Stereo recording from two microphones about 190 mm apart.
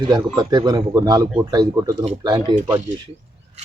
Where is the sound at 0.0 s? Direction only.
20° right (ahead or behind).